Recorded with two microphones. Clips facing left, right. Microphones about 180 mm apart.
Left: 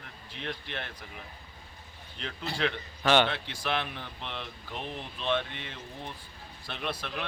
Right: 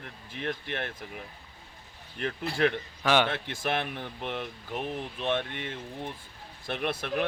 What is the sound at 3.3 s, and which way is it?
Speech, 50° right (ahead or behind).